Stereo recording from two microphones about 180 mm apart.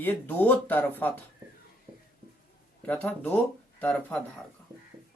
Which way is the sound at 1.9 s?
25° right (ahead or behind).